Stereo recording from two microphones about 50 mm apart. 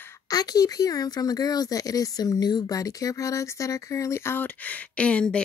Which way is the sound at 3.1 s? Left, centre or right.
Left.